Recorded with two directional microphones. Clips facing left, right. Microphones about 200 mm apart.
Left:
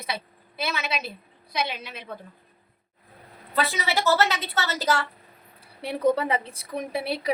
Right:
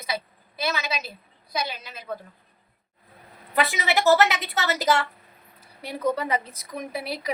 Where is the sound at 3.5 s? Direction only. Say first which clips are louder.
Right 2 dB; 15° right (ahead or behind).